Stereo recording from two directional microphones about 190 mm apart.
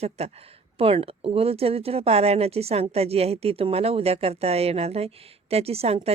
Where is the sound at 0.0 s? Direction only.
35° right (ahead or behind).